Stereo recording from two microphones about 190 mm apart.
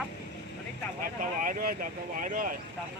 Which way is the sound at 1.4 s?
45° right (ahead or behind).